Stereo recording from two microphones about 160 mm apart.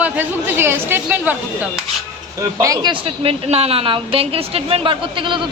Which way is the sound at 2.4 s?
20° right (ahead or behind).